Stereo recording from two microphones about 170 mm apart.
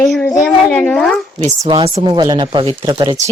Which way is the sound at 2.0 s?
25° right (ahead or behind).